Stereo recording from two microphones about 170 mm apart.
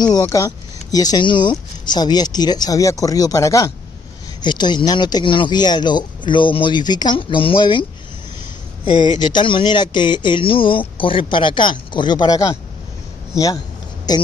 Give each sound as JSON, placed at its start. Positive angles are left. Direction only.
{"t": 0.0, "sound": "speech", "side_deg": 20}
{"t": 9.2, "sound": "speech", "side_deg": 30}
{"t": 14.1, "sound": "speech", "side_deg": 25}